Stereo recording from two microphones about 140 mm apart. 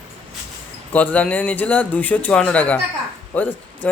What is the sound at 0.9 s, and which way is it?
Speech, 10° left (ahead or behind).